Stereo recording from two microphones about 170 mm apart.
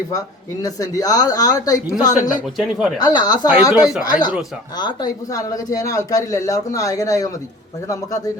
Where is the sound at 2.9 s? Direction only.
25° left (ahead or behind).